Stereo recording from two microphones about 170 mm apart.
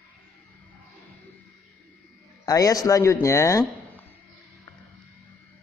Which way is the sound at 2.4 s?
20° left (ahead or behind).